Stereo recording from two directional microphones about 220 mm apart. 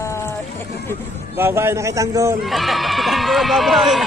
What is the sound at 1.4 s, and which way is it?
A man's voice, 10° right (ahead or behind).